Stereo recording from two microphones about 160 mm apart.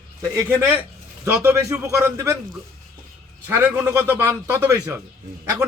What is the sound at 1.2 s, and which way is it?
Speech, 15° right (ahead or behind).